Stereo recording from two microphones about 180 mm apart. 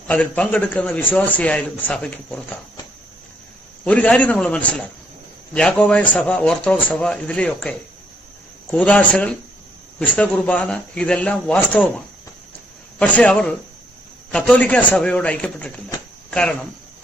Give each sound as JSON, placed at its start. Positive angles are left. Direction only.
{"t": 0.1, "sound": "speech", "side_deg": 5}
{"t": 3.8, "sound": "speech", "side_deg": 5}
{"t": 13.0, "sound": "a man's voice", "side_deg": 5}